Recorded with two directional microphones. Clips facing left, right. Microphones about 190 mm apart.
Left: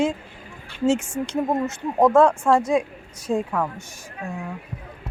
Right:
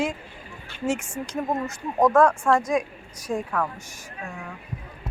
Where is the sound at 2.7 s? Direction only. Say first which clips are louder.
Left 3 dB; 25° left (ahead or behind).